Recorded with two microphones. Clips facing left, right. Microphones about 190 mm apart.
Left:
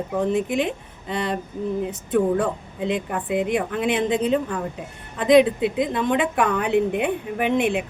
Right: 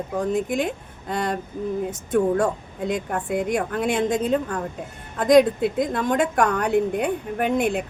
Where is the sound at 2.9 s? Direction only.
Centre (ahead or behind).